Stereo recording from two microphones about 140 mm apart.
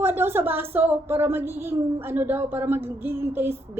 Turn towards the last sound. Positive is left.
turn(degrees=-15)  # may be behind; listen again after turning